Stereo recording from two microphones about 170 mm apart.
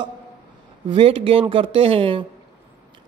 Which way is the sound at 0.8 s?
30° right (ahead or behind).